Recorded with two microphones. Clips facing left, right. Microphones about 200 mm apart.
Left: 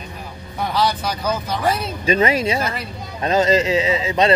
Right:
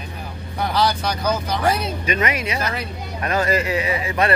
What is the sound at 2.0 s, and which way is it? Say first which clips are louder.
Speech: left 7 dB; 30° left (ahead or behind).